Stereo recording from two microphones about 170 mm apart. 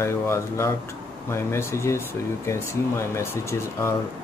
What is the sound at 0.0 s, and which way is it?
Speech, 15° left (ahead or behind).